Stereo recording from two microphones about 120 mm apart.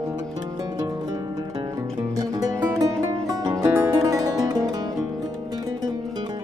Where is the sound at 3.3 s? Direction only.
30° right (ahead or behind).